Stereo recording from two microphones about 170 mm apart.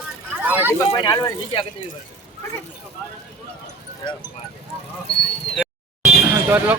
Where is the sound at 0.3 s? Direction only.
10° right (ahead or behind).